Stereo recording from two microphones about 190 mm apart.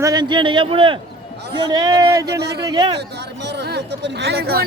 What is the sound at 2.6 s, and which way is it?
Speech, 20° right (ahead or behind).